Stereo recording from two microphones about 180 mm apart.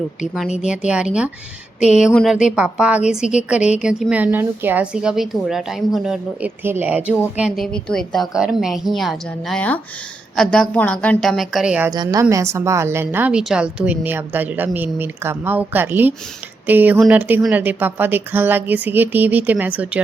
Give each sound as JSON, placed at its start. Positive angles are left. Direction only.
{"t": 0.2, "sound": "a woman's voice", "side_deg": 0}
{"t": 11.9, "sound": "a woman's voice", "side_deg": -20}